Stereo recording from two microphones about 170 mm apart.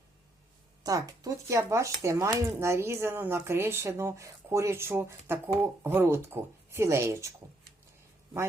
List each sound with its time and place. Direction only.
0.9 s speech: 20° right (ahead or behind)